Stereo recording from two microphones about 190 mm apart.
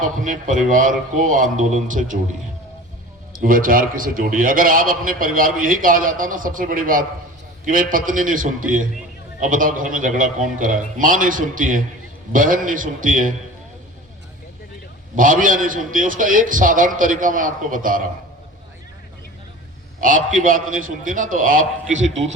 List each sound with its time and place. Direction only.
0.0 s a man's voice: 45° right (ahead or behind)
3.3 s a man's voice: 45° right (ahead or behind)
15.1 s a man's voice: 45° right (ahead or behind)
20.0 s a man's voice: 45° right (ahead or behind)